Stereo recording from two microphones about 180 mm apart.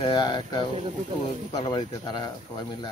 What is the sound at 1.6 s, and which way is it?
Speech, 25° left (ahead or behind).